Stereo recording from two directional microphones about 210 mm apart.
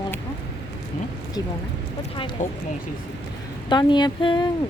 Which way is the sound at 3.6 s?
20° left (ahead or behind).